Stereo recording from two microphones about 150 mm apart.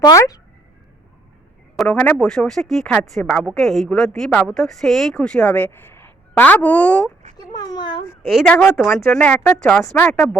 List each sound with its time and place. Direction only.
0.0 s speech: 25° left (ahead or behind)
1.9 s a woman's voice: 10° left (ahead or behind)
7.3 s speech: 25° left (ahead or behind)
8.3 s a woman's voice: centre (ahead or behind)
8.5 s speech: 15° left (ahead or behind)